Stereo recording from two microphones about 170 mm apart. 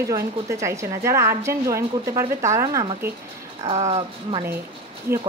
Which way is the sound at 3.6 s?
35° right (ahead or behind).